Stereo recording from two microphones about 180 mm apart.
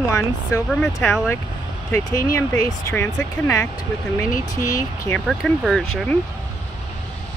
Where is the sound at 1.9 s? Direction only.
20° left (ahead or behind).